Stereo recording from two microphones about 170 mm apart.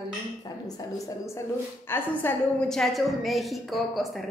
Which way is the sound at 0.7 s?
20° left (ahead or behind).